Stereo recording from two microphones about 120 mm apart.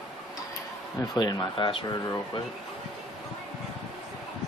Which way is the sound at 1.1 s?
35° left (ahead or behind).